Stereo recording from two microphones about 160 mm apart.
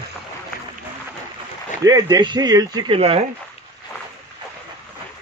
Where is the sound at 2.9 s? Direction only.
35° right (ahead or behind).